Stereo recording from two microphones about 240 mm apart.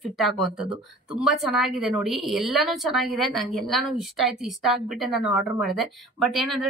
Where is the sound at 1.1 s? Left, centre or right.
Centre.